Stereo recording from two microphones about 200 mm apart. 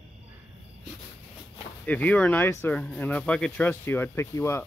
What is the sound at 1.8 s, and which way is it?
Speech, 5° left (ahead or behind).